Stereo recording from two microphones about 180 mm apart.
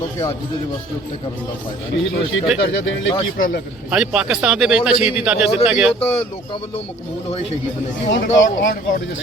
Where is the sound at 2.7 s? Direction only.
90° left.